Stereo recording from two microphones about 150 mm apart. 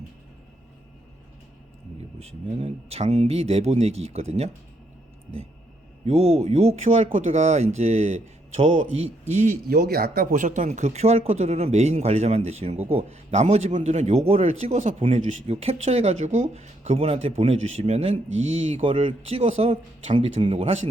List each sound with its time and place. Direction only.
2.1 s speech: 45° right (ahead or behind)
6.1 s speech: 45° right (ahead or behind)
9.6 s speech: 90° right; by 20.8 s 45° right (ahead or behind)